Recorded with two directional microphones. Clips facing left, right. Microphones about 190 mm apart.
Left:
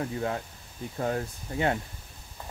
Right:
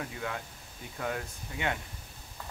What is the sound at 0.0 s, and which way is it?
Speech, 35° left (ahead or behind).